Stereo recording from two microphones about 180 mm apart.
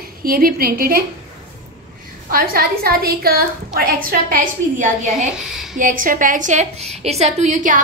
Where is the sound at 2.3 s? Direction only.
55° right (ahead or behind).